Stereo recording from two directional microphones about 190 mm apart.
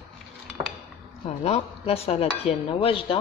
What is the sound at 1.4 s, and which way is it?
Speech, 30° left (ahead or behind).